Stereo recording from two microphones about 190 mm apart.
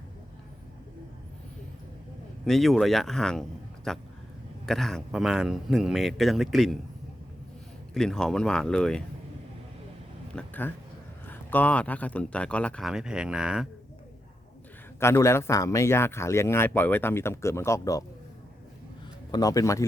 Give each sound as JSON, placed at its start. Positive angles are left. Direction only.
{"t": 2.4, "sound": "speech", "side_deg": 0}
{"t": 7.9, "sound": "speech", "side_deg": 0}
{"t": 10.3, "sound": "speech", "side_deg": 10}
{"t": 14.9, "sound": "speech", "side_deg": 15}
{"t": 19.3, "sound": "a man's voice", "side_deg": 20}